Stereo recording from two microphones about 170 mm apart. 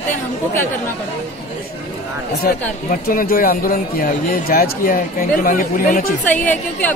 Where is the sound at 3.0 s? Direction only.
60° left (ahead or behind).